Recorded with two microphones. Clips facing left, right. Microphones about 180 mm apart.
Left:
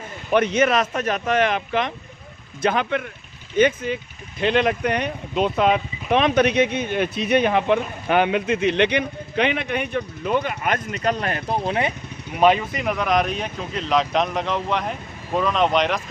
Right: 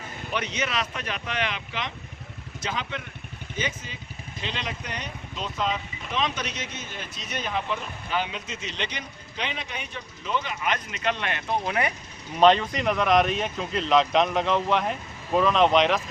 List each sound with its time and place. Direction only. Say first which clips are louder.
0.3 s speech: left 12 dB; 55° left (ahead or behind); by 11.9 s 30° left (ahead or behind)
12.4 s speech: left 1 dB; 10° left (ahead or behind)